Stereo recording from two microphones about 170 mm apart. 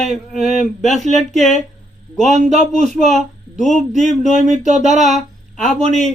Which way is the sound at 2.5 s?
45° right (ahead or behind).